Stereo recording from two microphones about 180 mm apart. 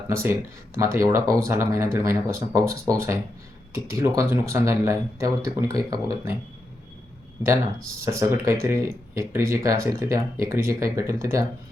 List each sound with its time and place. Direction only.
0.1 s speech: 15° right (ahead or behind)
8.0 s speech: 15° right (ahead or behind)